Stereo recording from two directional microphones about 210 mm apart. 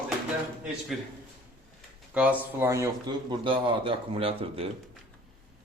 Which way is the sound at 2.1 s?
5° right (ahead or behind).